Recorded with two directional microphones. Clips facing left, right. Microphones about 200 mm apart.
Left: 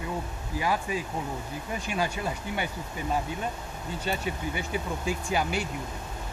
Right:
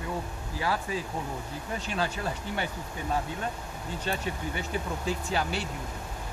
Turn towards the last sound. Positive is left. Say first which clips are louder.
# left 2 dB
turn(degrees=15)  # may be behind; listen again after turning